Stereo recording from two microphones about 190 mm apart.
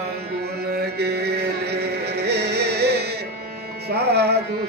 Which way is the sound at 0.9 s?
60° right (ahead or behind).